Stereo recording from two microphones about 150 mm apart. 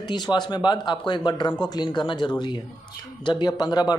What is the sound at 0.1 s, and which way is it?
Speech, 30° left (ahead or behind).